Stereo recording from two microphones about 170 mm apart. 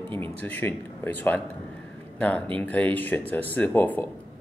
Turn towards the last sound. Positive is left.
turn(degrees=10)  # may be behind; listen again after turning